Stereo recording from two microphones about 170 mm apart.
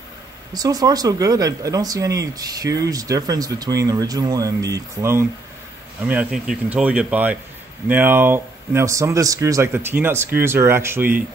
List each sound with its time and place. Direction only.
0.5 s speech: 20° right (ahead or behind)
6.0 s speech: 5° right (ahead or behind)